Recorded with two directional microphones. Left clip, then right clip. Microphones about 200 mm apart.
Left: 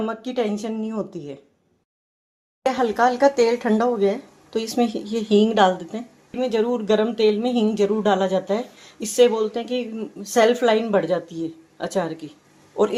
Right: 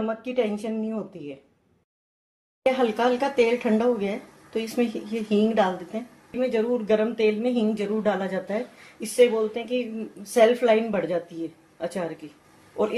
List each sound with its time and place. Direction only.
0.1 s speech: 45° left (ahead or behind)
2.7 s a man's voice: 35° left (ahead or behind)